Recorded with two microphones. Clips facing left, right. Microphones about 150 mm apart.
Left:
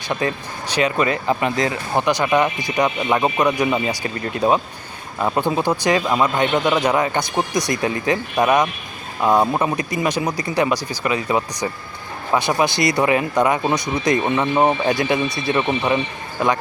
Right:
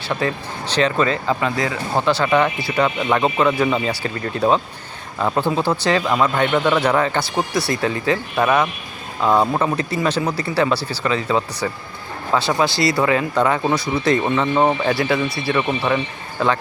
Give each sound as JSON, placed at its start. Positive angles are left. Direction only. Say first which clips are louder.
{"t": 0.1, "sound": "speech", "louder": "even", "side_deg": 15}